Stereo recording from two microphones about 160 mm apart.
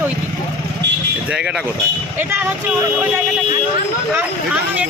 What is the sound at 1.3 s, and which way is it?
Speech, 5° right (ahead or behind).